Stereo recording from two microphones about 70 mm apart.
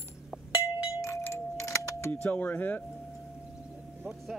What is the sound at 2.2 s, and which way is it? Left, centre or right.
Speech, left.